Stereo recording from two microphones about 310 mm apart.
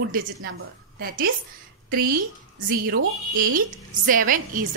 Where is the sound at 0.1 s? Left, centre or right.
Right.